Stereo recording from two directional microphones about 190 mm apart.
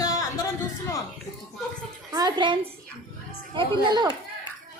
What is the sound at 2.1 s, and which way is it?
Speech, 20° right (ahead or behind).